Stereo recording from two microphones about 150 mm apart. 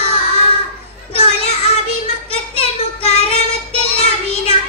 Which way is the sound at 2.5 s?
45° left (ahead or behind).